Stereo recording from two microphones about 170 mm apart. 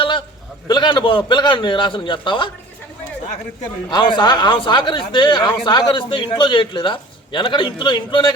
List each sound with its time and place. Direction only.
0.7 s speech: 25° left (ahead or behind)
3.9 s speech: 25° left (ahead or behind)